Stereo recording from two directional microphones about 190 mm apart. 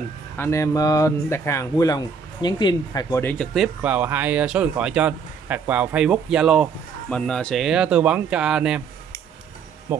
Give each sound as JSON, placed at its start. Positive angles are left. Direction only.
{"t": 0.4, "sound": "speech", "side_deg": 15}
{"t": 3.5, "sound": "speech", "side_deg": -5}
{"t": 9.9, "sound": "music", "side_deg": -10}